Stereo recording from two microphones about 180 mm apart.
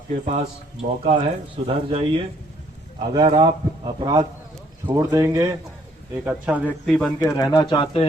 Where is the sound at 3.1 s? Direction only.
25° right (ahead or behind); by 6.7 s 10° right (ahead or behind).